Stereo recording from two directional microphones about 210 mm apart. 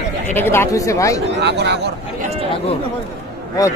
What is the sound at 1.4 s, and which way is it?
Speech, 55° right (ahead or behind).